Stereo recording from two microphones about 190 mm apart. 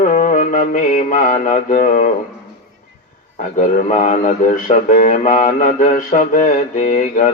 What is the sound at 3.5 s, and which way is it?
Speech, 40° left (ahead or behind).